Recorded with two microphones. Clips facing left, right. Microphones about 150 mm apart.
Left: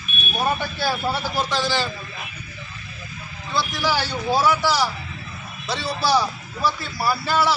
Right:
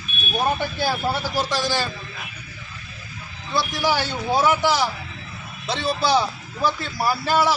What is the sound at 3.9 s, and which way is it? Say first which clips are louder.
Speech: even; 50° right (ahead or behind).